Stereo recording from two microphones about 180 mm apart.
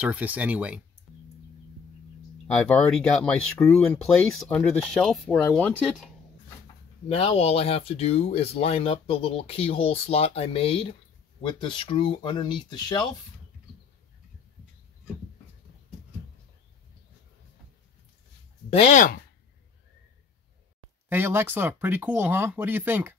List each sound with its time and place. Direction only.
0.0 s speech: 10° right (ahead or behind)
2.6 s speech: 5° left (ahead or behind)
7.1 s speech: 35° left (ahead or behind)
18.7 s speech: 40° left (ahead or behind)
21.1 s speech: 15° right (ahead or behind)